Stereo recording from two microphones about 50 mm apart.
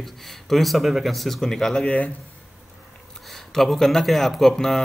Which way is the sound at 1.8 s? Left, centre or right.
Left.